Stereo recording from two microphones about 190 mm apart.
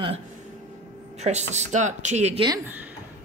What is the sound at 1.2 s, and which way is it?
Speech, 35° right (ahead or behind).